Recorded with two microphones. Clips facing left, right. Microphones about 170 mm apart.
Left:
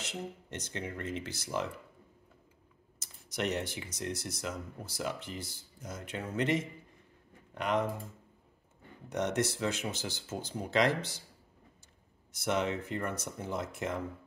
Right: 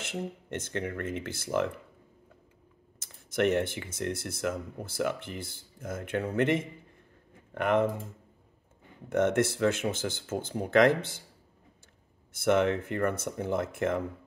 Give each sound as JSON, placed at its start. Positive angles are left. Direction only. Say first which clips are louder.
{"t": 0.0, "sound": "speech", "louder": "right 5 dB", "side_deg": -55}
{"t": 3.0, "sound": "speech", "louder": "right 8 dB", "side_deg": -55}
{"t": 9.1, "sound": "speech", "louder": "right 6 dB", "side_deg": -55}
{"t": 12.3, "sound": "speech", "louder": "right 7 dB", "side_deg": -55}